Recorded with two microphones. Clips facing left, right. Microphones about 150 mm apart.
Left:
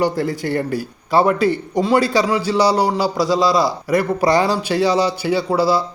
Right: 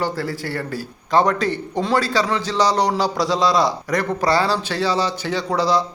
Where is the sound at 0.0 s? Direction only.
20° left (ahead or behind).